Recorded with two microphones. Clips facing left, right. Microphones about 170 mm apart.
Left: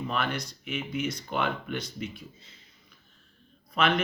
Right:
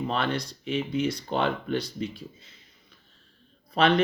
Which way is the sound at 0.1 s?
30° right (ahead or behind).